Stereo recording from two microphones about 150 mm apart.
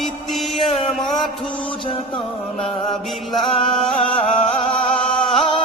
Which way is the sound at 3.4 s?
35° left (ahead or behind).